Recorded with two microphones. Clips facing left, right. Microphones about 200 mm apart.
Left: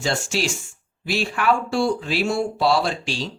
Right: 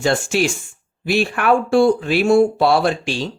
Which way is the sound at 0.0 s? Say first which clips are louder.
Right 6 dB; 55° right (ahead or behind).